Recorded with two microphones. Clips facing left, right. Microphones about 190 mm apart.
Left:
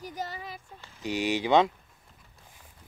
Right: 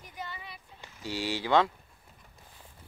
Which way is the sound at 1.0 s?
20° left (ahead or behind).